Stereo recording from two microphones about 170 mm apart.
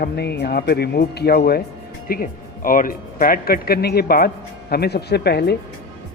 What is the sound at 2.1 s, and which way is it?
A man's voice, 55° left (ahead or behind).